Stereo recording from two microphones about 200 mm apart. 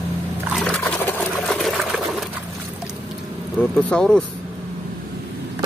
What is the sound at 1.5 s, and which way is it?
Sewing machine, centre (ahead or behind).